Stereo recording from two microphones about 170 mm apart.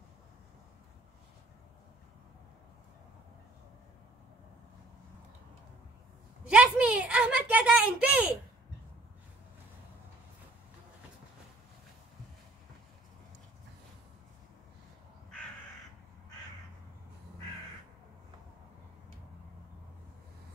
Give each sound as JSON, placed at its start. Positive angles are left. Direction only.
{"t": 6.5, "sound": "speech", "side_deg": -5}